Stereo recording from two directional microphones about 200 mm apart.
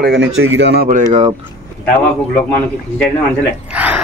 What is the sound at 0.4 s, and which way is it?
Speech, 65° right (ahead or behind).